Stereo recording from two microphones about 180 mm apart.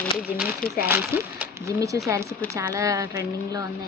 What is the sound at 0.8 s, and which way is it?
A woman's voice, 15° right (ahead or behind).